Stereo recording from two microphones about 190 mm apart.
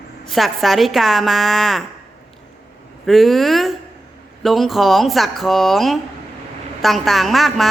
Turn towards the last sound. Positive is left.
turn(degrees=0)  # may be behind; listen again after turning